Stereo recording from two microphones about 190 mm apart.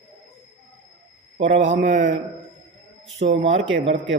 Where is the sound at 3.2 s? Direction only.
45° right (ahead or behind).